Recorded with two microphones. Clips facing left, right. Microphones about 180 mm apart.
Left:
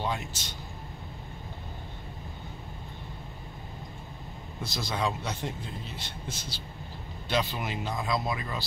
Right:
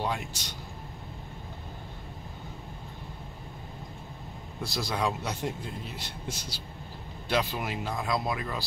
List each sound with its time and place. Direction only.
0.0 s speech: centre (ahead or behind)
4.6 s a man's voice: centre (ahead or behind)